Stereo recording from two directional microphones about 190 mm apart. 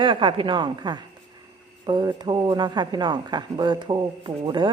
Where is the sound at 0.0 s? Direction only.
25° right (ahead or behind).